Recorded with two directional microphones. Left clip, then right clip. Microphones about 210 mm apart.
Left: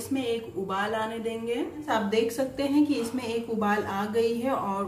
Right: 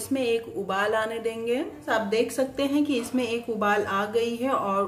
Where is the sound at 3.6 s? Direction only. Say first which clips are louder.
Right 5 dB; 45° right (ahead or behind).